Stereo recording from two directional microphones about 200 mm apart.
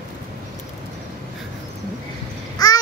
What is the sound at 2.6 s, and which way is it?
Babbling, 20° left (ahead or behind).